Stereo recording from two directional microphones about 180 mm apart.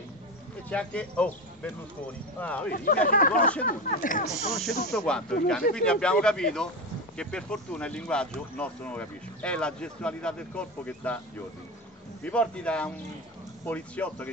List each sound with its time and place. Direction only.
0.7 s speech: 5° left (ahead or behind)
2.7 s speech: 50° left (ahead or behind)
4.3 s speech: centre (ahead or behind)